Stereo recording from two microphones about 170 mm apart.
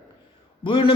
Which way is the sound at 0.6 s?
30° left (ahead or behind).